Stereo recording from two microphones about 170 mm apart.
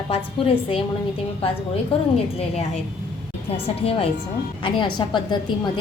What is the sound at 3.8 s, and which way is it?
A woman's voice, 35° left (ahead or behind).